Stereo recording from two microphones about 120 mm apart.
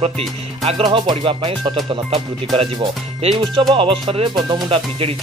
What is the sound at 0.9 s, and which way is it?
Speech, 45° right (ahead or behind).